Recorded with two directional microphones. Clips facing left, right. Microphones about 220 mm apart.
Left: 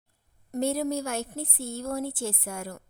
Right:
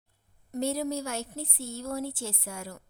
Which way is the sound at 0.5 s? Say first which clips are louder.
Left 3 dB; 55° left (ahead or behind).